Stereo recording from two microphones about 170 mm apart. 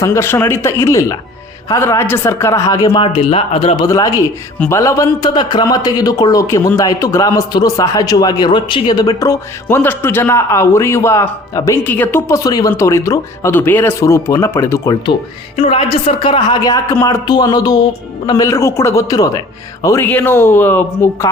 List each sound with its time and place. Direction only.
0.0 s speech: 15° left (ahead or behind)
2.8 s speech: 30° left (ahead or behind)
3.8 s a man's voice: 20° left (ahead or behind)
15.5 s a man's voice: 35° left (ahead or behind); by 21.2 s 15° left (ahead or behind)